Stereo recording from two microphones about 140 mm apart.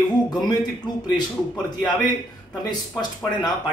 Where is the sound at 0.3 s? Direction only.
30° left (ahead or behind).